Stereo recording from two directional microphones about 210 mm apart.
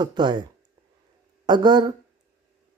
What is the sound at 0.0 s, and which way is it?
Speech, 20° right (ahead or behind).